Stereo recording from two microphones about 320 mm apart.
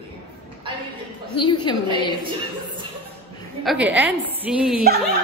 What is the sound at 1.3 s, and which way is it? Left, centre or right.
Speech, centre.